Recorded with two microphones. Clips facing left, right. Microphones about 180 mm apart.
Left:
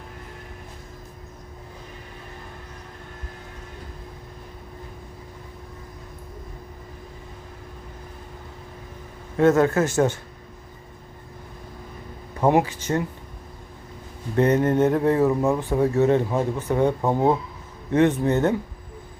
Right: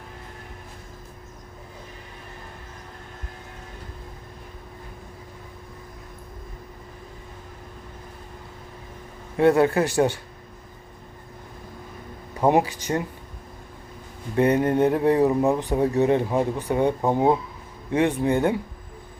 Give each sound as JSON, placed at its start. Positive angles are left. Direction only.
{"t": 9.4, "sound": "speech", "side_deg": -15}
{"t": 12.4, "sound": "speech", "side_deg": -15}
{"t": 14.3, "sound": "speech", "side_deg": -15}